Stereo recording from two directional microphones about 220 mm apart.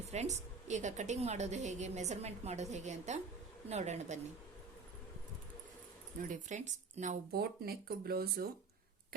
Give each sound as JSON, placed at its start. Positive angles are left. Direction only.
{"t": 0.0, "sound": "a woman's voice", "side_deg": -30}
{"t": 6.2, "sound": "speech", "side_deg": -35}